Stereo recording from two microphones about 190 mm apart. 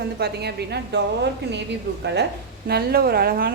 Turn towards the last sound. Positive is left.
turn(degrees=-50)  # may be behind; listen again after turning